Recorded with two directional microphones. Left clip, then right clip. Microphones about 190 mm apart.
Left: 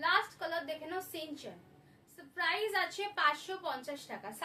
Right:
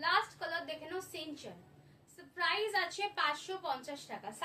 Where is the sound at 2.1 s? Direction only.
15° left (ahead or behind).